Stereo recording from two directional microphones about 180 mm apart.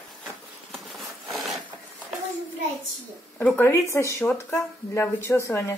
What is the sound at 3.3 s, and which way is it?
A woman's voice, 10° left (ahead or behind).